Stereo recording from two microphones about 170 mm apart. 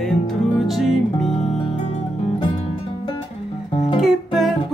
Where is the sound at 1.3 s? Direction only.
40° left (ahead or behind).